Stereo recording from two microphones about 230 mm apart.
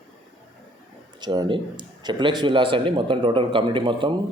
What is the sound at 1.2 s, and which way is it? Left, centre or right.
Speech, centre.